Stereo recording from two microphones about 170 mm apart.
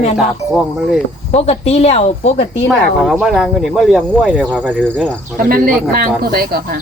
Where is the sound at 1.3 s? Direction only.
40° left (ahead or behind).